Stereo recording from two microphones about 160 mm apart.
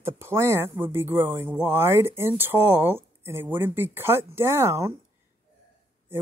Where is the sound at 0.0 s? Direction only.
15° right (ahead or behind).